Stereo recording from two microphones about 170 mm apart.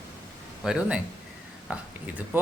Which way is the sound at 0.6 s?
5° right (ahead or behind).